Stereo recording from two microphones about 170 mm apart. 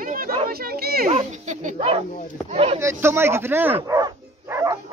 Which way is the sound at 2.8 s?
15° right (ahead or behind).